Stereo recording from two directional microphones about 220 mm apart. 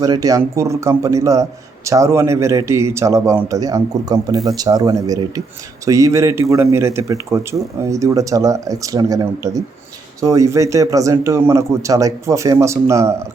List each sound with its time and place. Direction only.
0.0 s a man's voice: 15° right (ahead or behind)